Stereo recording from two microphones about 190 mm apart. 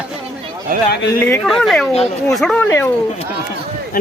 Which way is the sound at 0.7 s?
50° right (ahead or behind).